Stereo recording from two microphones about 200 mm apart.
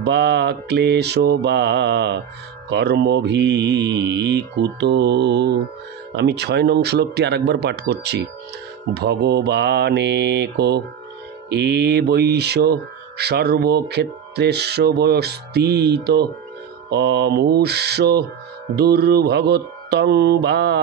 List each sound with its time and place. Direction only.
0.0 s speech: 55° right (ahead or behind)